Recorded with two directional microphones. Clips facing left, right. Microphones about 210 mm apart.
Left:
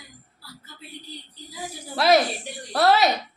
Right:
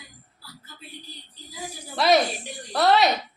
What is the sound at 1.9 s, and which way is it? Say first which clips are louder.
Music: left 1 dB; centre (ahead or behind).